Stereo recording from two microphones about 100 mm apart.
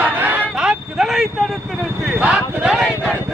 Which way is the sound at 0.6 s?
5° right (ahead or behind).